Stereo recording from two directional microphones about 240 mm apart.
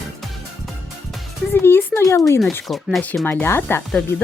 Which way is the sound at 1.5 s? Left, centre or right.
Centre.